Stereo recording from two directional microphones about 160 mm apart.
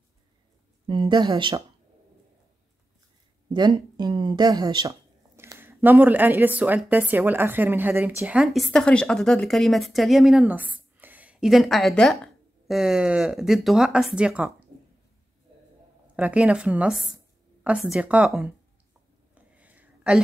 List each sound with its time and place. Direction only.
0.8 s speech: 30° right (ahead or behind)
3.4 s a sound: 25° right (ahead or behind)
3.9 s speech: 30° right (ahead or behind)
5.3 s speech: 15° right (ahead or behind)
16.2 s speech: 10° right (ahead or behind)
19.3 s a sound: 10° right (ahead or behind)